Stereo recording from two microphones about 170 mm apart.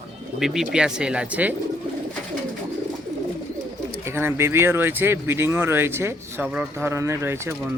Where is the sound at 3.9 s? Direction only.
15° right (ahead or behind).